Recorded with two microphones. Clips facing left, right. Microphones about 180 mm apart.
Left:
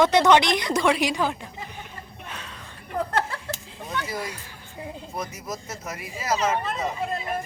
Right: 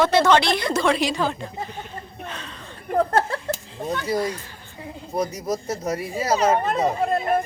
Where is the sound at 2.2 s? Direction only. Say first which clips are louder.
Right 2 dB; 10° left (ahead or behind).